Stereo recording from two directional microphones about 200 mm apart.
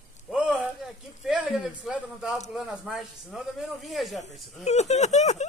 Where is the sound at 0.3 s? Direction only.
5° right (ahead or behind).